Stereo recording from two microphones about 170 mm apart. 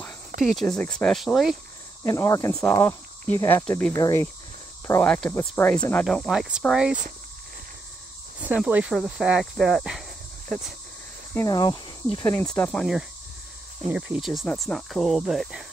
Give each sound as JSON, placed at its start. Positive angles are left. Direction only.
{"t": 0.4, "sound": "speech", "side_deg": 0}
{"t": 2.0, "sound": "speech", "side_deg": 15}
{"t": 2.5, "sound": "speech", "side_deg": 5}
{"t": 3.9, "sound": "speech", "side_deg": 20}
{"t": 6.0, "sound": "speech", "side_deg": 0}
{"t": 8.4, "sound": "speech", "side_deg": -5}
{"t": 11.3, "sound": "speech", "side_deg": 20}
{"t": 13.8, "sound": "speech", "side_deg": -5}